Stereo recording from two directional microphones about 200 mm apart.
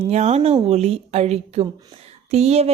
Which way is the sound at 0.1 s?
35° right (ahead or behind).